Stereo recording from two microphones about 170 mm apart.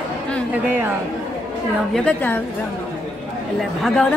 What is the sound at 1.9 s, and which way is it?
Speech, 5° left (ahead or behind).